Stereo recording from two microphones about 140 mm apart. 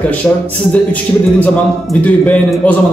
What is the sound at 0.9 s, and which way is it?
A man's voice, 10° left (ahead or behind).